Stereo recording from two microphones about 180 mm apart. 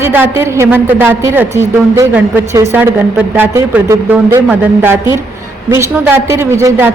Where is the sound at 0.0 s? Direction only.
10° right (ahead or behind).